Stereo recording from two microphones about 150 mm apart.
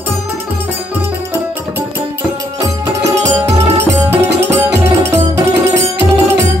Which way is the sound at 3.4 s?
15° right (ahead or behind).